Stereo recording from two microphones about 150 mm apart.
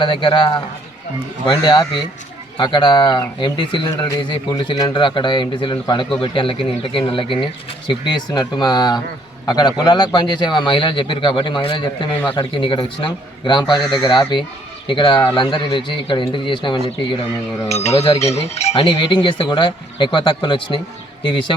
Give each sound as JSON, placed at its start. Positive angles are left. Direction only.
{"t": 0.0, "sound": "a man's voice", "side_deg": 30}
{"t": 17.7, "sound": "a man's voice", "side_deg": 45}